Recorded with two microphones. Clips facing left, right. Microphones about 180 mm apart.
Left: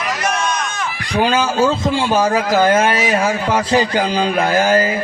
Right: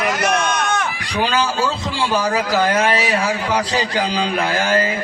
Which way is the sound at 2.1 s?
40° left (ahead or behind).